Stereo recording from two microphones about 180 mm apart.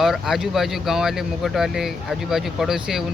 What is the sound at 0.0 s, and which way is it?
Speech, centre (ahead or behind).